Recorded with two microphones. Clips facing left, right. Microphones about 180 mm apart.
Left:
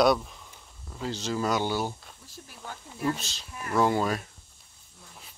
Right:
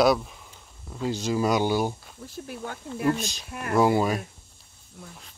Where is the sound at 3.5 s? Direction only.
65° right (ahead or behind).